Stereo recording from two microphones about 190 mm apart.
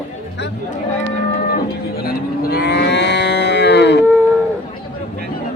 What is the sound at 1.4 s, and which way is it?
Livestock, 50° left (ahead or behind).